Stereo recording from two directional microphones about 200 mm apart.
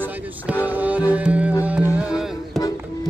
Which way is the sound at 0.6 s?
10° right (ahead or behind).